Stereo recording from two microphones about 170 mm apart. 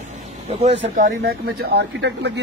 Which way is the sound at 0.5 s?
40° right (ahead or behind).